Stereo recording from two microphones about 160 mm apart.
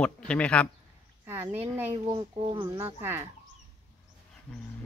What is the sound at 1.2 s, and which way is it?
Speech, 15° right (ahead or behind).